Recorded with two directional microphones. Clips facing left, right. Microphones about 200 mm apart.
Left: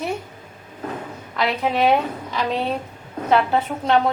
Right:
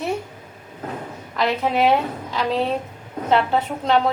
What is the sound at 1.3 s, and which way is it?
Speech, centre (ahead or behind).